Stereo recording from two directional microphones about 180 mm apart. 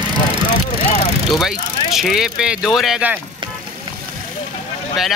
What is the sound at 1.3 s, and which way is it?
Speech, centre (ahead or behind).